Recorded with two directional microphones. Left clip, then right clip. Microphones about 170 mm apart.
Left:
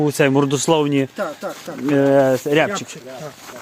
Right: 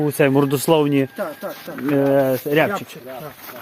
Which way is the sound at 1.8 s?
10° left (ahead or behind).